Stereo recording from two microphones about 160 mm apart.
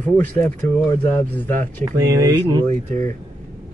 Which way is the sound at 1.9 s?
20° right (ahead or behind).